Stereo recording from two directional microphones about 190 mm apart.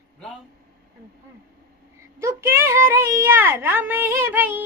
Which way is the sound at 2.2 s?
15° right (ahead or behind).